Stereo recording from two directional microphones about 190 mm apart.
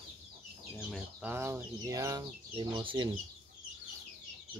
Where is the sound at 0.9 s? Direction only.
10° right (ahead or behind); by 3.1 s 25° right (ahead or behind).